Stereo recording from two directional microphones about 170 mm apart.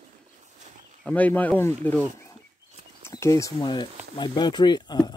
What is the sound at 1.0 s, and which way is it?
Speech, 10° left (ahead or behind).